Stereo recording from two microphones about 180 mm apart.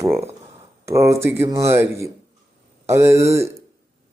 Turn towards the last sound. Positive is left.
turn(degrees=-15)  # may be behind; listen again after turning